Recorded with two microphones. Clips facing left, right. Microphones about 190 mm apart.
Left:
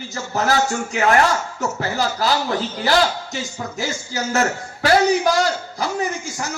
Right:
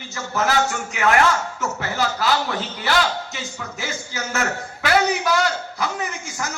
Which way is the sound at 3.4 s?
35° left (ahead or behind).